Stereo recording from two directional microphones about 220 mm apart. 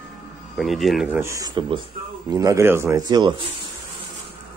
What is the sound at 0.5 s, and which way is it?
Speech, centre (ahead or behind).